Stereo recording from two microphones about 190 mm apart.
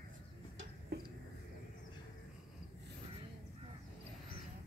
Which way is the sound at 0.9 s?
60° right (ahead or behind).